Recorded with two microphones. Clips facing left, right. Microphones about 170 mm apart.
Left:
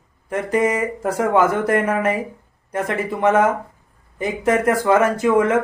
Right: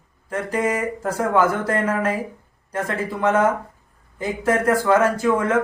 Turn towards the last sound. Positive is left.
turn(degrees=20)  # may be behind; listen again after turning